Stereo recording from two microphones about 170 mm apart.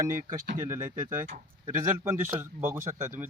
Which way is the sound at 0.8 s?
45° right (ahead or behind).